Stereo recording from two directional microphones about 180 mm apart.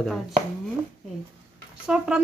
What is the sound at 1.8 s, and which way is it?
Speech, 5° right (ahead or behind).